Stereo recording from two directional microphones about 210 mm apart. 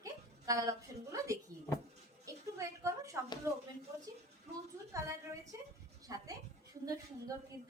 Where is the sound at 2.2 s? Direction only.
15° right (ahead or behind).